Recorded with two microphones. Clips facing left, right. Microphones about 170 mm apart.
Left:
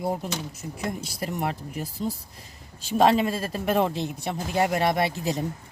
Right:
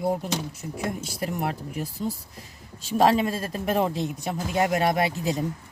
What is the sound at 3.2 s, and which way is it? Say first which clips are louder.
Speech: left 1 dB; 5° left (ahead or behind).